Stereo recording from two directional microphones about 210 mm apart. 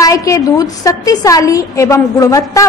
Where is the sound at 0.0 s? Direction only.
15° left (ahead or behind).